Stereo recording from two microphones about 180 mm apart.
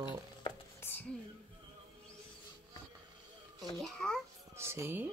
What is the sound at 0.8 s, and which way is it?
Whispering, 10° left (ahead or behind).